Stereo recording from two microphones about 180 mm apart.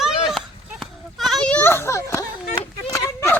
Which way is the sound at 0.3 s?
Centre (ahead or behind).